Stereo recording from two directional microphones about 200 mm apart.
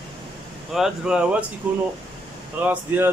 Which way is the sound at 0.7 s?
Centre (ahead or behind).